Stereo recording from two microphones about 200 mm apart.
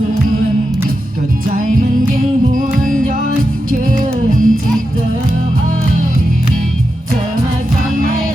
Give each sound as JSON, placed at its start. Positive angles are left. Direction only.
{"t": 2.1, "sound": "music", "side_deg": -45}
{"t": 3.8, "sound": "music", "side_deg": -40}